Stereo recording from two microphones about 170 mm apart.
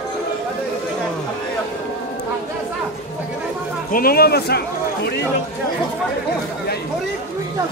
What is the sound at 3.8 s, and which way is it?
Speech, 60° left (ahead or behind).